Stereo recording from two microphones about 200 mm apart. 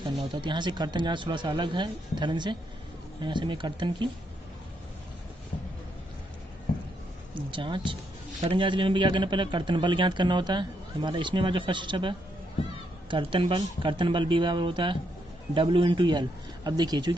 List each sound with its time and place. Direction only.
0.3 s a man's voice: 25° right (ahead or behind)
7.3 s a man's voice: 25° right (ahead or behind)